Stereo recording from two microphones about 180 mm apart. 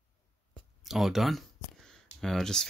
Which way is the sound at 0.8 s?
Centre (ahead or behind).